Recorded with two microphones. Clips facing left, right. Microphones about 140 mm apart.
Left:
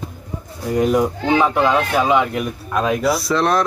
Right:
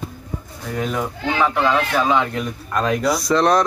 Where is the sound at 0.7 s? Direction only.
15° left (ahead or behind).